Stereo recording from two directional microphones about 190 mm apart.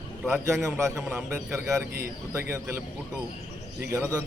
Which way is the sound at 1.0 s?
Centre (ahead or behind).